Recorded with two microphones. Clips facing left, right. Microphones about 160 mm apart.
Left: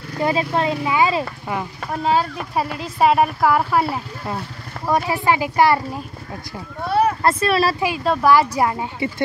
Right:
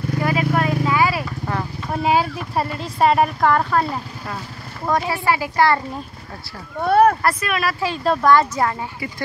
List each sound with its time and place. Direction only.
0.2 s vehicle: 25° left (ahead or behind)
1.9 s speech: 10° right (ahead or behind)
2.5 s a woman's voice: centre (ahead or behind)
4.8 s speech: 15° left (ahead or behind)
6.9 s speech: 55° right (ahead or behind)
7.2 s speech: 30° left (ahead or behind)
8.0 s speech: 5° left (ahead or behind)